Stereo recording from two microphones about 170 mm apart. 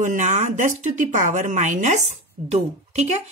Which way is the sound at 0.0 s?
50° right (ahead or behind).